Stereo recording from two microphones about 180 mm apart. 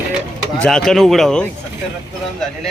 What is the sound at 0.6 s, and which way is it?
Speech, 5° left (ahead or behind).